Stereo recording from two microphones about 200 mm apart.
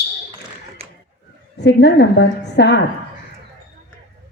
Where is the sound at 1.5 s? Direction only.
60° left (ahead or behind).